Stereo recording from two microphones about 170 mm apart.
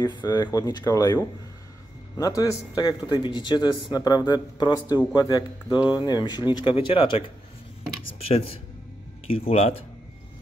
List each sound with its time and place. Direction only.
0.0 s speech: 25° left (ahead or behind)
8.3 s speech: 35° left (ahead or behind)